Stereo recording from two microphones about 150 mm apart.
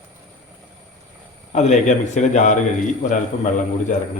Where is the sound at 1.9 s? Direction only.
50° left (ahead or behind).